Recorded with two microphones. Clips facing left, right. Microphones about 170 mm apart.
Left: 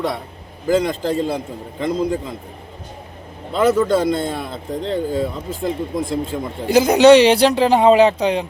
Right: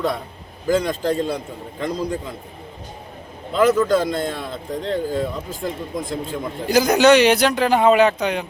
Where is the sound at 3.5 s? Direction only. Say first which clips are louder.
Left 1 dB; 25° left (ahead or behind).